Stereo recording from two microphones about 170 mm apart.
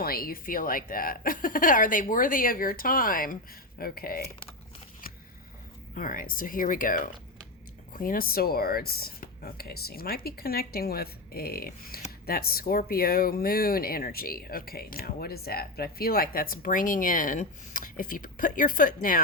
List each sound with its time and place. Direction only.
0.0 s speech: 60° left (ahead or behind)
5.9 s speech: 55° left (ahead or behind)